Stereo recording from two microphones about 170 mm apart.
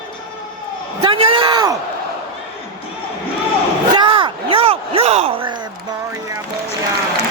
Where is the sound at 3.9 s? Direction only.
30° right (ahead or behind).